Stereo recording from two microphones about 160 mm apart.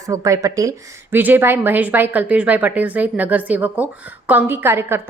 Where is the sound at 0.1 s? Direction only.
20° right (ahead or behind).